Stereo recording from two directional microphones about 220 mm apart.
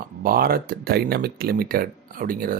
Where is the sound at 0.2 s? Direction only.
40° right (ahead or behind).